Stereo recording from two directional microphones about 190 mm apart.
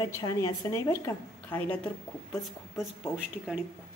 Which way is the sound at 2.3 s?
5° right (ahead or behind).